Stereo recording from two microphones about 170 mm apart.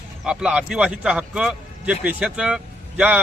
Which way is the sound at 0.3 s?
5° right (ahead or behind).